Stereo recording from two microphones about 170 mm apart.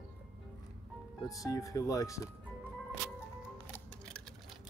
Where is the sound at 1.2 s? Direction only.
20° left (ahead or behind).